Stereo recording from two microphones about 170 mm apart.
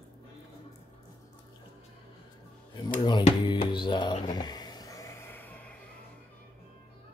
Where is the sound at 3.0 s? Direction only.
25° left (ahead or behind); by 5.8 s 10° left (ahead or behind).